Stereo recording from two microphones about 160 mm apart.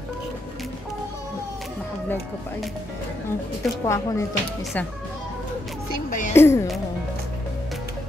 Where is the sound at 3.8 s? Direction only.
20° left (ahead or behind).